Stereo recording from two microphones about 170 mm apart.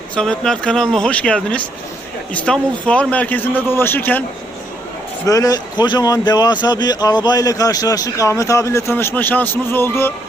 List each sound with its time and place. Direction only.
0.2 s a man's voice: 5° left (ahead or behind)
5.2 s a man's voice: 20° left (ahead or behind)